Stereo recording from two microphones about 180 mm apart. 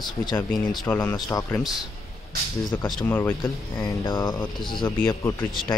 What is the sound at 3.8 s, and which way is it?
Speech, 25° left (ahead or behind).